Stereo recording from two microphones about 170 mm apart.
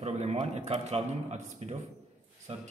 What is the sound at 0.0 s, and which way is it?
A man's voice, 40° right (ahead or behind).